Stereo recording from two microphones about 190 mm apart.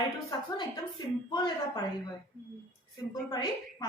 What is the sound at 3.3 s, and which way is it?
Speech, 20° left (ahead or behind).